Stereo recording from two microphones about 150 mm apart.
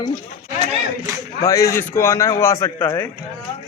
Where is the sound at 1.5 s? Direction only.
20° left (ahead or behind).